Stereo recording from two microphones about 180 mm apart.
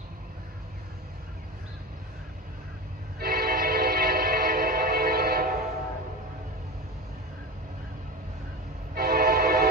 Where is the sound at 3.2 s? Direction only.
55° right (ahead or behind).